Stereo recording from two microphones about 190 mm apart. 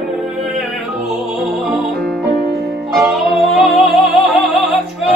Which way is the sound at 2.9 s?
Centre (ahead or behind).